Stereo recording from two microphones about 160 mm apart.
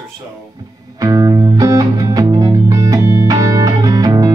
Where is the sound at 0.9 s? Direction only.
20° right (ahead or behind).